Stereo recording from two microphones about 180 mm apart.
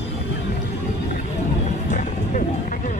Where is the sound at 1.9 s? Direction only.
45° left (ahead or behind).